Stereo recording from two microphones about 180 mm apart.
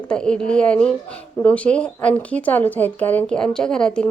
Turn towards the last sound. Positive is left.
turn(degrees=5)  # may be behind; listen again after turning